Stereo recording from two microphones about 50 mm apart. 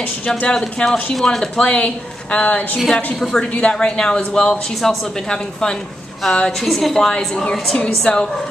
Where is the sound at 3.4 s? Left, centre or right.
Left.